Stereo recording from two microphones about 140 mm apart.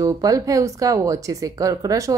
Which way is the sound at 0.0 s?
25° right (ahead or behind).